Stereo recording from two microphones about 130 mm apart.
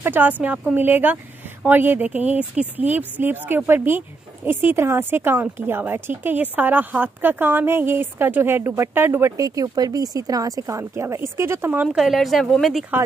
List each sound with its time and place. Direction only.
0.0 s a woman's voice: 15° right (ahead or behind); by 12.8 s centre (ahead or behind)